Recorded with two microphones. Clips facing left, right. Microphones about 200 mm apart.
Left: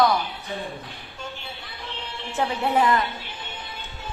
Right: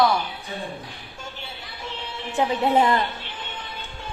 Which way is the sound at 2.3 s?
20° right (ahead or behind).